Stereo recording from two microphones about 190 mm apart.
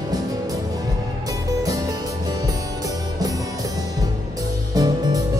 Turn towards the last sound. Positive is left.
turn(degrees=-20)  # may be behind; listen again after turning